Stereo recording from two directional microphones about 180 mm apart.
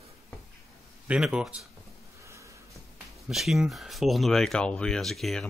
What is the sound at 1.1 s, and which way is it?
Speech, 5° right (ahead or behind).